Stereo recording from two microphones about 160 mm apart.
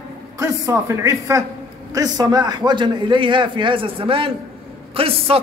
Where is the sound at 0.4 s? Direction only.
20° right (ahead or behind).